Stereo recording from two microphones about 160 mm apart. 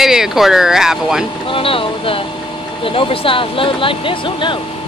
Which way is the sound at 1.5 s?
35° left (ahead or behind).